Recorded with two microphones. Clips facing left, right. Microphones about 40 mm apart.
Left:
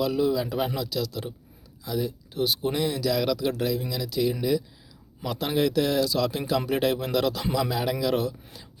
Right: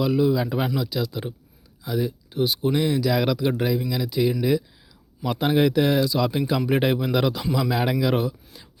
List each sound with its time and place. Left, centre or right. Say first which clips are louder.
0.0 s speech: right 3 dB; centre
0.8 s speech: right 3 dB; centre